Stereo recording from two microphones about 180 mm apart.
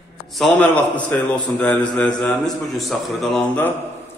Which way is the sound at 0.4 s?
5° left (ahead or behind).